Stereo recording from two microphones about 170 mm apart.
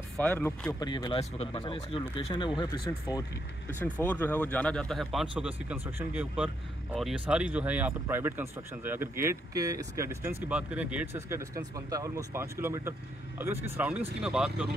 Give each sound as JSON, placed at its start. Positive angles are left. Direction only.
{"t": 0.2, "sound": "speech", "side_deg": 10}
{"t": 0.7, "sound": "speech", "side_deg": 25}
{"t": 4.0, "sound": "speech", "side_deg": 10}